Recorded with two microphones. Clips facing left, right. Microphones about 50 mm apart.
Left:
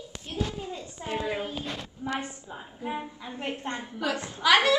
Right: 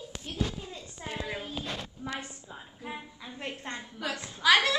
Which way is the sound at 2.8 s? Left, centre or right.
Left.